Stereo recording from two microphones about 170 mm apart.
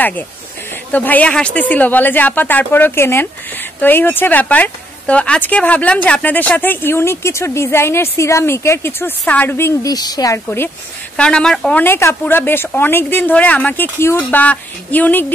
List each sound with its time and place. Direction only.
0.9 s speech: 10° left (ahead or behind)